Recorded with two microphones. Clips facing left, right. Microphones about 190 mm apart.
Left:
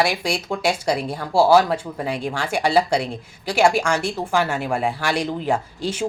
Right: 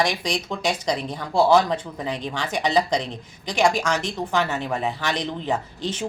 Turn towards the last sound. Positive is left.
turn(degrees=10)  # may be behind; listen again after turning